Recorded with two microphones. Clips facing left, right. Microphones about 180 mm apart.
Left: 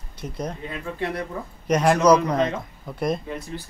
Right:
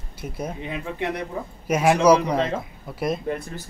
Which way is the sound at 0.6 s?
20° right (ahead or behind).